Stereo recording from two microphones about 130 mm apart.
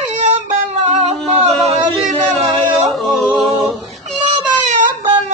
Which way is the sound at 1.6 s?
Centre (ahead or behind).